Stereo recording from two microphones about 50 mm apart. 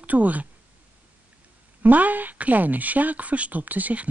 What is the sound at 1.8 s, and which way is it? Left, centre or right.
A woman's voice, right.